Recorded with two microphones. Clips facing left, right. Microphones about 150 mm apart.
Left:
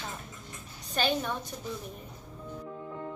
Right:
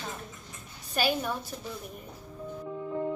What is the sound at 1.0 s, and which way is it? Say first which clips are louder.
Speech: right 1 dB; 5° right (ahead or behind).